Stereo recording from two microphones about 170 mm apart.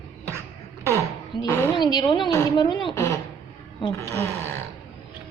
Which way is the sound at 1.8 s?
25° left (ahead or behind).